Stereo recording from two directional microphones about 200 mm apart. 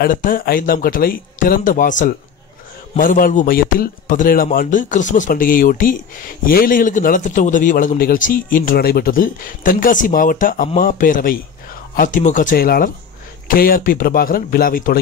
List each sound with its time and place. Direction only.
0.0 s a man's voice: 45° left (ahead or behind)